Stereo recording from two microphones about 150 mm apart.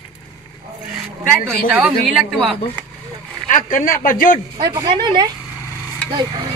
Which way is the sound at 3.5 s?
60° left (ahead or behind).